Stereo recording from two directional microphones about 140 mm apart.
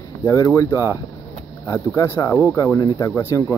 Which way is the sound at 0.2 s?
25° left (ahead or behind).